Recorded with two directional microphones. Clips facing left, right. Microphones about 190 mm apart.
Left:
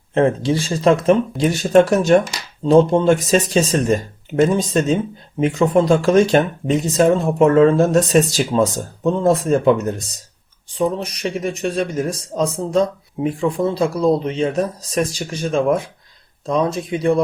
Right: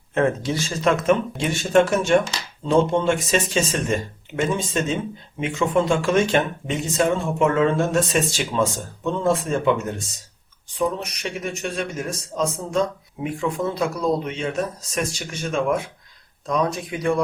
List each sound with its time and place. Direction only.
0.1 s speech: 30° left (ahead or behind)